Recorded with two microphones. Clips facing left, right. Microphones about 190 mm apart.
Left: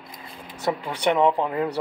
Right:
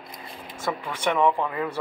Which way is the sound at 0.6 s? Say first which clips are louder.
Left 3 dB; 35° left (ahead or behind).